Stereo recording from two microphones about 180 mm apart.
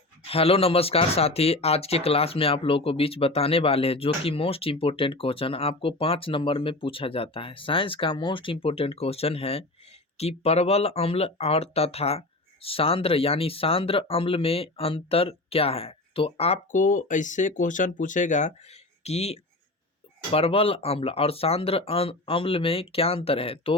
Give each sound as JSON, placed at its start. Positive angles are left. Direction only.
{"t": 0.3, "sound": "speech", "side_deg": 30}